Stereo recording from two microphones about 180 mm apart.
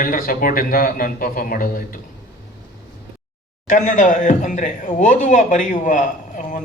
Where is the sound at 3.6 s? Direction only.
45° left (ahead or behind).